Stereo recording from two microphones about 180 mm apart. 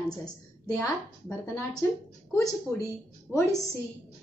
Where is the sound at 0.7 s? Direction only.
15° left (ahead or behind).